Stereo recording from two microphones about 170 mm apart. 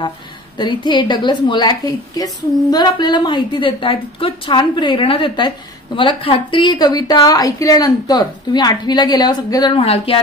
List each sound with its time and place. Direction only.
0.6 s a woman's voice: 25° left (ahead or behind)